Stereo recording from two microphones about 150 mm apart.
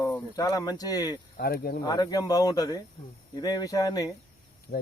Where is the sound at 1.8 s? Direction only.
25° left (ahead or behind).